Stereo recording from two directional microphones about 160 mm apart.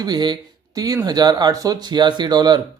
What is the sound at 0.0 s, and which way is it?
Speech, 25° right (ahead or behind).